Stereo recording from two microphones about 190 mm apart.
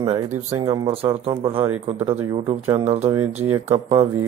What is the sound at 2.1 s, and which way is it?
Speech, 15° right (ahead or behind).